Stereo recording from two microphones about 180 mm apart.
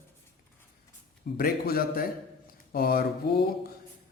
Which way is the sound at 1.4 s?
55° left (ahead or behind).